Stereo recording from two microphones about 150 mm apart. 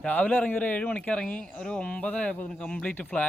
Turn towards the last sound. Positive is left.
turn(degrees=10)  # may be behind; listen again after turning